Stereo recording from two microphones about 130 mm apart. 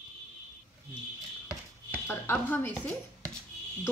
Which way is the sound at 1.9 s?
15° left (ahead or behind).